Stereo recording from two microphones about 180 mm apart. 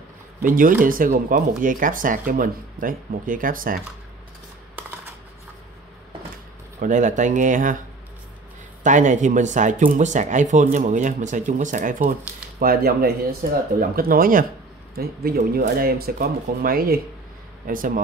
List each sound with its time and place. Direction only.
0.4 s speech: 50° right (ahead or behind)
6.8 s speech: 45° right (ahead or behind)
8.8 s speech: 45° right (ahead or behind)